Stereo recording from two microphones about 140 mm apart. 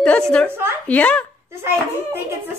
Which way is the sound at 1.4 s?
15° right (ahead or behind).